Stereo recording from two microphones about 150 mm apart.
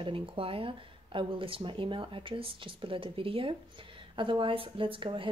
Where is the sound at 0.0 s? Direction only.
35° right (ahead or behind).